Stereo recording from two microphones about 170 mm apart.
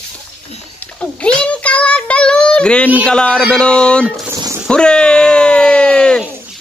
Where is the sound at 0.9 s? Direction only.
5° left (ahead or behind).